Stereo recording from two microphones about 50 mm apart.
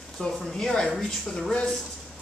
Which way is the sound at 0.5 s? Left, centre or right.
Centre.